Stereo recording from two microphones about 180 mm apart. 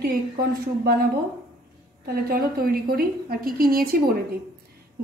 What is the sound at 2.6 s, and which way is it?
Speech, 55° right (ahead or behind).